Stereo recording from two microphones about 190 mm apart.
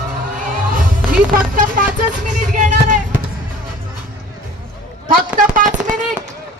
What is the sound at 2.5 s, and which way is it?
Basketball bounce, 40° right (ahead or behind).